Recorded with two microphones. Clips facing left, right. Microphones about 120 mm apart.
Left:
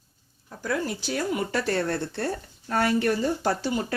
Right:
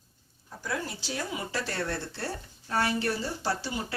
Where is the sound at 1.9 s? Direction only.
55° left (ahead or behind).